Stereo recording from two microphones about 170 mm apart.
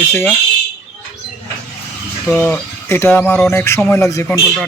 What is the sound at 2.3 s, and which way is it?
Speech, 15° left (ahead or behind).